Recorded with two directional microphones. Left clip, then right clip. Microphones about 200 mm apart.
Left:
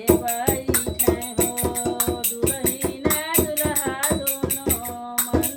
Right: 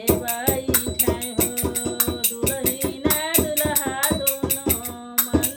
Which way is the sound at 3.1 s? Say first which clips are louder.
Right 1 dB; 15° right (ahead or behind).